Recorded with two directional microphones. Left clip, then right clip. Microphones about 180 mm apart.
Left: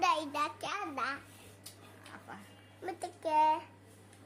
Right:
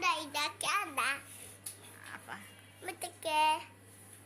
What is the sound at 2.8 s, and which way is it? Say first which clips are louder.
Speech: left 2 dB; 35° left (ahead or behind).